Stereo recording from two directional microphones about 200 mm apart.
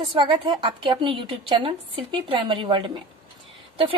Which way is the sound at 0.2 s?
25° right (ahead or behind).